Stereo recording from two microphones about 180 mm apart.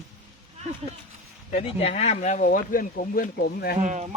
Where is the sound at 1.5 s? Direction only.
35° left (ahead or behind); by 3.8 s 60° left (ahead or behind).